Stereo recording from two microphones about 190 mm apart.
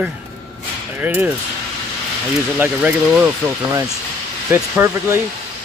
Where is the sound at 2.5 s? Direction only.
10° right (ahead or behind).